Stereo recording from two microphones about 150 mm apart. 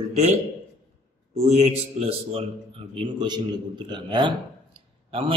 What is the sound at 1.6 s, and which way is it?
A man's voice, 40° right (ahead or behind).